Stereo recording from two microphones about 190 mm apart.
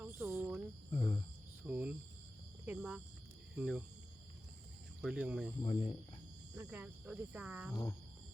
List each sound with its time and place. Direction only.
0.0 s cricket: 15° right (ahead or behind)
0.9 s cricket: 25° left (ahead or behind)
1.6 s cricket: 5° right (ahead or behind)
3.5 s speech: 5° right (ahead or behind)
4.9 s speech: 5° right (ahead or behind)
5.6 s speech: 30° left (ahead or behind)
6.5 s speech: 5° right (ahead or behind)